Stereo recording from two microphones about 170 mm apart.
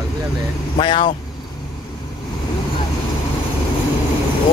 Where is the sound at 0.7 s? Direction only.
30° left (ahead or behind).